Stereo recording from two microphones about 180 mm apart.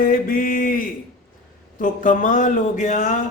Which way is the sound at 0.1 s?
50° left (ahead or behind).